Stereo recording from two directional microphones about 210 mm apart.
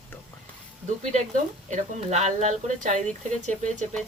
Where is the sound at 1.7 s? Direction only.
35° right (ahead or behind).